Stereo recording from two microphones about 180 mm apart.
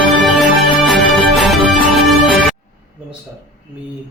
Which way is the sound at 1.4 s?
Centre (ahead or behind).